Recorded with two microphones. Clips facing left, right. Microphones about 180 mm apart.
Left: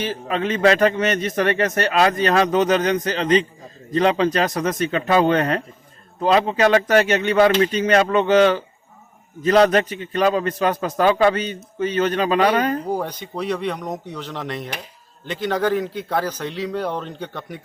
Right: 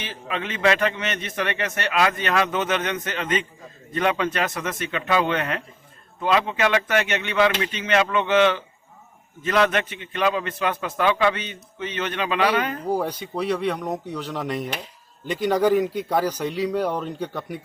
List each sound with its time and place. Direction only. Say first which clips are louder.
0.0 s a man's voice: left 7 dB; 40° left (ahead or behind)
12.9 s a man's voice: even; 5° right (ahead or behind)